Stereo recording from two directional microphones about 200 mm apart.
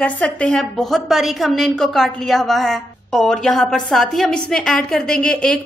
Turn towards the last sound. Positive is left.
turn(degrees=5)  # may be behind; listen again after turning